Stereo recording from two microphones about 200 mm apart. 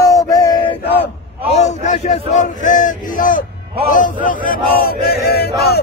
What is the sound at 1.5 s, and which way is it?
Speech, 35° left (ahead or behind).